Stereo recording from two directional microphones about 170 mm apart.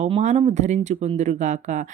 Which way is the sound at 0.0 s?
45° right (ahead or behind).